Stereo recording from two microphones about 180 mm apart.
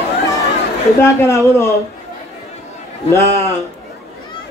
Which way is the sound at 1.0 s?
15° left (ahead or behind).